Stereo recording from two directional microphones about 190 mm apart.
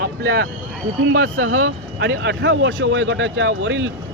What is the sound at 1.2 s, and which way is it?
Speech, 90° right.